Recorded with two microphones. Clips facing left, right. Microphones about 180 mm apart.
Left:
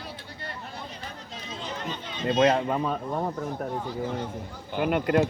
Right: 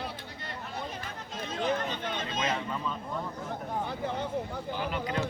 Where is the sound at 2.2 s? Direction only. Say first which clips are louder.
Left 14 dB; 60° left (ahead or behind).